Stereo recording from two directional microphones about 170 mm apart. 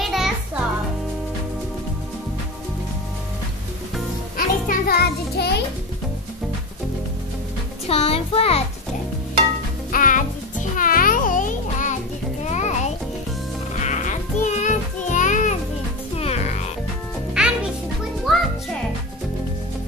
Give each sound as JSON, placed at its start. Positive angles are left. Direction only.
{"t": 0.0, "sound": "music", "side_deg": 0}
{"t": 4.4, "sound": "music", "side_deg": 60}
{"t": 7.9, "sound": "music", "side_deg": 35}
{"t": 9.8, "sound": "music", "side_deg": 55}
{"t": 17.3, "sound": "music", "side_deg": -5}